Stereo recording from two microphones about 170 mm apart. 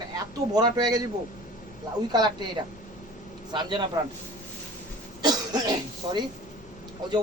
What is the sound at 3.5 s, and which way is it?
Speech, 25° right (ahead or behind).